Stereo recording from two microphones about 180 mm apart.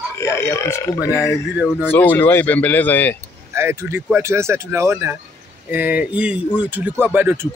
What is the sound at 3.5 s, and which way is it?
Speech, 15° right (ahead or behind).